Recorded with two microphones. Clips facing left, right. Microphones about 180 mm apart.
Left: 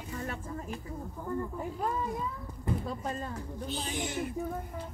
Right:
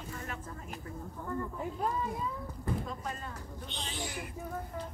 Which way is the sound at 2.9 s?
35° left (ahead or behind).